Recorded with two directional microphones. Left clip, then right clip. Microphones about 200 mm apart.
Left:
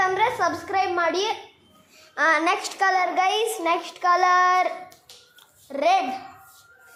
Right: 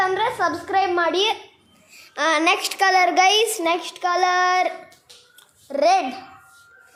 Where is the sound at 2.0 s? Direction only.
15° right (ahead or behind).